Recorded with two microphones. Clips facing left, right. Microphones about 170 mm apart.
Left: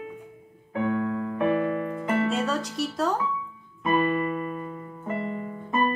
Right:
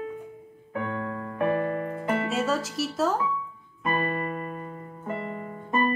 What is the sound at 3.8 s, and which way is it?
Keyboard, 45° right (ahead or behind).